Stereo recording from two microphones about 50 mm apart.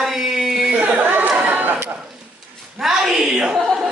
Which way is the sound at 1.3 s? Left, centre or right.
Right.